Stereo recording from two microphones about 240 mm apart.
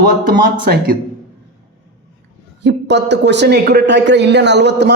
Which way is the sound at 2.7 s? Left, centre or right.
Right.